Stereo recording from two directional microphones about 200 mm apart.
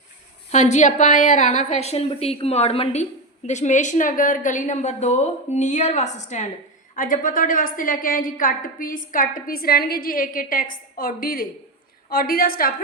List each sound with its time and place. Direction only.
0.5 s a woman's voice: 35° left (ahead or behind)